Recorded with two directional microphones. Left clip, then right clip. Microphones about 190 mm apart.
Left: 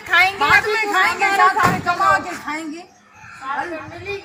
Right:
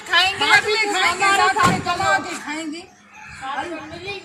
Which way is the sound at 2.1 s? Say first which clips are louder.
Left 3 dB; 10° right (ahead or behind).